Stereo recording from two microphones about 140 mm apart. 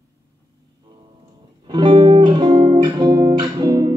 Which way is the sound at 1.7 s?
35° right (ahead or behind).